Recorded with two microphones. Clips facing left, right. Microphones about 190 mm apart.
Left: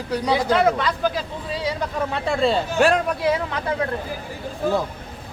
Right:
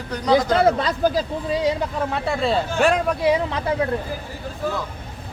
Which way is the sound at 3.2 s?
20° right (ahead or behind).